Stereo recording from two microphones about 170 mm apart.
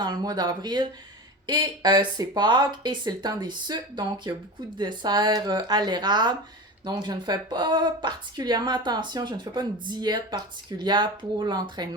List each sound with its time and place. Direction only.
0.0 s speech: 25° right (ahead or behind)